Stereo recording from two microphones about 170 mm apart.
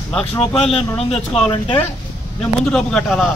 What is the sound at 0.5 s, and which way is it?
Speech, 35° left (ahead or behind).